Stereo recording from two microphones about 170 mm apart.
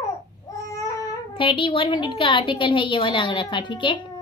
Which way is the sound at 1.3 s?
30° left (ahead or behind).